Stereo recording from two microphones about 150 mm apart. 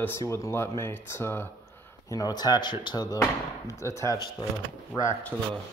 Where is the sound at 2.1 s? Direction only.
25° left (ahead or behind).